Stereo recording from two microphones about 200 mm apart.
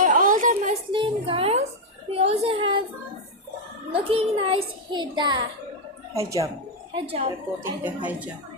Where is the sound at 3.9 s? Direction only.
30° right (ahead or behind).